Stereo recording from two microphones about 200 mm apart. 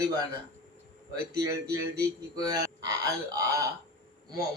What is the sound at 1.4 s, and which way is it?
Speech, 15° right (ahead or behind).